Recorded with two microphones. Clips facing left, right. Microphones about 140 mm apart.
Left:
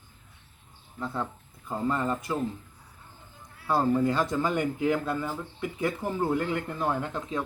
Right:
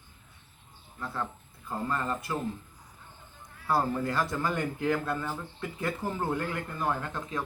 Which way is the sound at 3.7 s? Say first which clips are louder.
Left 4 dB; 20° left (ahead or behind).